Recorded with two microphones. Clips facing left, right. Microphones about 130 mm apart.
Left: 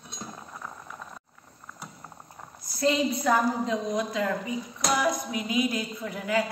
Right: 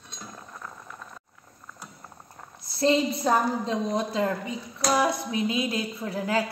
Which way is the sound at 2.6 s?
30° right (ahead or behind).